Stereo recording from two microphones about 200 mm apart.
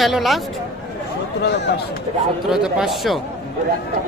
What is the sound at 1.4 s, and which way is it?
Speech, 60° left (ahead or behind).